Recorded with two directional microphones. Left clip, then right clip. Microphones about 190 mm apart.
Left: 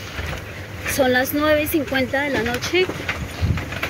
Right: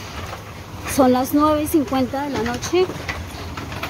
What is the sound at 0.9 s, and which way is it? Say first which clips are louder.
Speech: right 2 dB; 30° right (ahead or behind).